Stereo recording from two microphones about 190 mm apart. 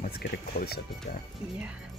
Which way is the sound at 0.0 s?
55° left (ahead or behind).